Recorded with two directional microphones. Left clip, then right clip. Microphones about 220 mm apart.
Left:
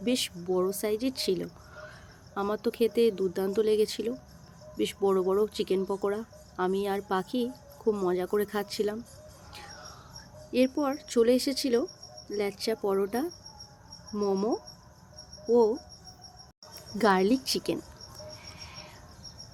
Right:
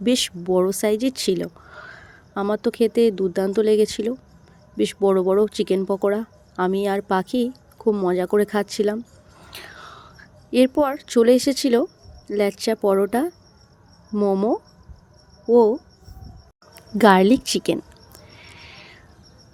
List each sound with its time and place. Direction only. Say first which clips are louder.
0.0 s speech: right 9 dB; 35° right (ahead or behind)
9.5 s whispering: right 8 dB; 35° right (ahead or behind)
10.5 s speech: right 9 dB; 35° right (ahead or behind)
16.7 s a woman's voice: right 10 dB; 35° right (ahead or behind)
18.3 s a sound: right 2 dB; 30° right (ahead or behind)